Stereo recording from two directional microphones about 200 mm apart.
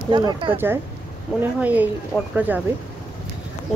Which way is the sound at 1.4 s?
10° right (ahead or behind).